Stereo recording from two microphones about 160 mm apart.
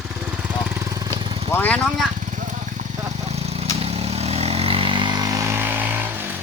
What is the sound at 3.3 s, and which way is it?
Vehicle, 40° right (ahead or behind).